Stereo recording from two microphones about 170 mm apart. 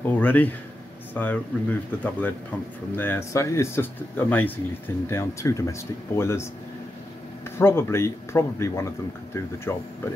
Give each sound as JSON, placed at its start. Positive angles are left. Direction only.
{"t": 0.0, "sound": "speech", "side_deg": 10}
{"t": 7.4, "sound": "speech", "side_deg": 15}